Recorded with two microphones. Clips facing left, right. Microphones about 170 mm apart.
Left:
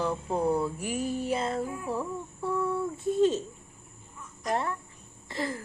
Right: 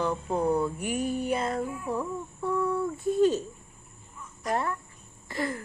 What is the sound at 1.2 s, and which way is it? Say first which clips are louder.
Child singing: right 1 dB; 30° left (ahead or behind).